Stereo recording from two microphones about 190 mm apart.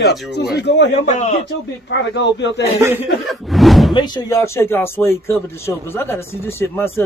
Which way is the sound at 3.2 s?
Centre (ahead or behind).